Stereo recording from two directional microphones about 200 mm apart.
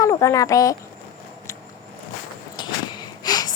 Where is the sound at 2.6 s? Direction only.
20° left (ahead or behind).